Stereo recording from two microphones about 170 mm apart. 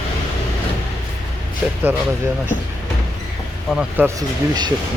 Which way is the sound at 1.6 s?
5° right (ahead or behind).